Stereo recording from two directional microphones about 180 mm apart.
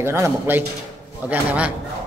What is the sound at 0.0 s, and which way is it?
A man's voice, 15° right (ahead or behind).